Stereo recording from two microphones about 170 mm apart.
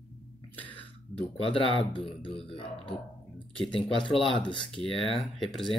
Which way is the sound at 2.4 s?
30° left (ahead or behind).